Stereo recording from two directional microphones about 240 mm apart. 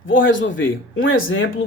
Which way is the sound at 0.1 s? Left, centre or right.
Left.